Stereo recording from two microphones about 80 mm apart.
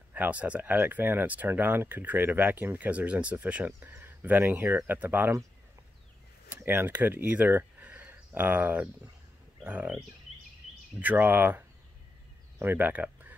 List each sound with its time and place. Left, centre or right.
0.1 s speech: centre
6.5 s speech: right